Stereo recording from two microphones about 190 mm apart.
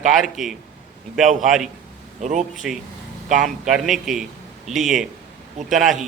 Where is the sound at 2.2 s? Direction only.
40° right (ahead or behind).